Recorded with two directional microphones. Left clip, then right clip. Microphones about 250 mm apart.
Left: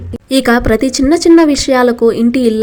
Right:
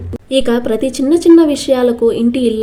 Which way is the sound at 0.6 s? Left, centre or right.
Left.